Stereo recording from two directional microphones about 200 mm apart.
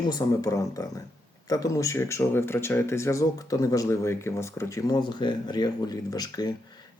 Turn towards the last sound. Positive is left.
turn(degrees=20)  # may be behind; listen again after turning